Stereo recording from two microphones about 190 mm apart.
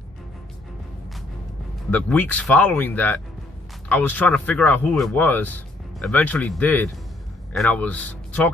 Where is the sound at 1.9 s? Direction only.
5° left (ahead or behind).